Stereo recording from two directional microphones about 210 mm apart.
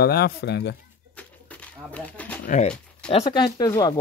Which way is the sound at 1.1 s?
5° left (ahead or behind).